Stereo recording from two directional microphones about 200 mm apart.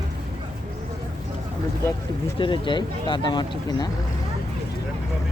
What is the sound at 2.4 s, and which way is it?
Speech, 25° left (ahead or behind).